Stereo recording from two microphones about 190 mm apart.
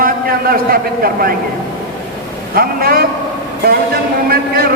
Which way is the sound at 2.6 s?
50° right (ahead or behind).